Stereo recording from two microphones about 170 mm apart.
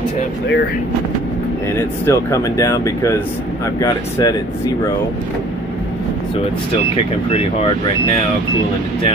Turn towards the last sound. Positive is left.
turn(degrees=35)  # may be behind; listen again after turning